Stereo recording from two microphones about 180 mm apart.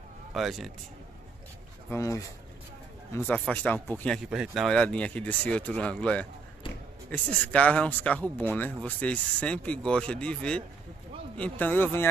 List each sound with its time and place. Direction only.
0.3 s speech: centre (ahead or behind)
1.9 s speech: 15° left (ahead or behind)